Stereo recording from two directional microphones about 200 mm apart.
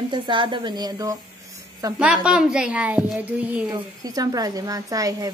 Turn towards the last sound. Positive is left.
turn(degrees=-15)  # may be behind; listen again after turning